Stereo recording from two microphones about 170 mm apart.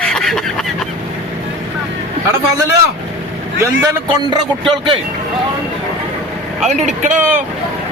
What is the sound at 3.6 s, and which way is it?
Speech, 20° right (ahead or behind).